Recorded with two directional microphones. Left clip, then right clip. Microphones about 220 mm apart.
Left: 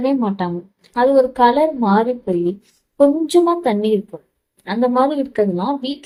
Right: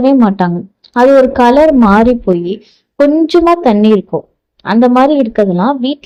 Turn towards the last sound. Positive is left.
turn(degrees=-35)  # may be behind; listen again after turning